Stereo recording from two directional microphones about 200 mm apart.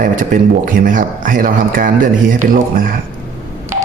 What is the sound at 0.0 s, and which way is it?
Speech, 45° right (ahead or behind).